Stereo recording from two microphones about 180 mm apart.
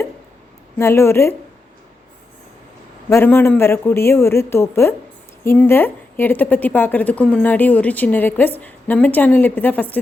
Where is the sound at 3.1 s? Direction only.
10° left (ahead or behind).